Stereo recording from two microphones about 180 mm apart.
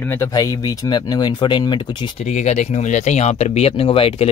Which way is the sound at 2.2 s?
40° left (ahead or behind).